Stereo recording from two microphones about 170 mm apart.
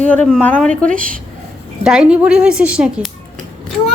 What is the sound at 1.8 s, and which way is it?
A woman's voice, 5° right (ahead or behind).